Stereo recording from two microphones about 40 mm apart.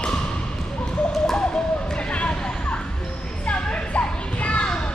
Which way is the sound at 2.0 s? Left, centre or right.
Left.